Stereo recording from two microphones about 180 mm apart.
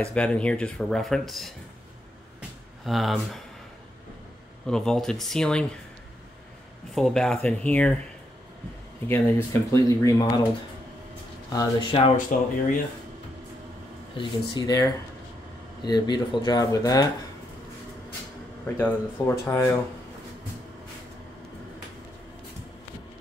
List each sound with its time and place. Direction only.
0.0 s speech: 5° left (ahead or behind)
2.8 s speech: centre (ahead or behind)
4.6 s speech: 5° left (ahead or behind)
7.0 s speech: centre (ahead or behind)
9.0 s speech: 15° left (ahead or behind)
11.5 s speech: 25° left (ahead or behind)
12.3 s speech: 50° left (ahead or behind)
14.1 s speech: 25° left (ahead or behind)
18.8 s speech: 10° left (ahead or behind)